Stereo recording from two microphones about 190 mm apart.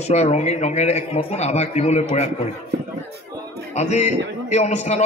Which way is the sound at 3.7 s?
35° left (ahead or behind).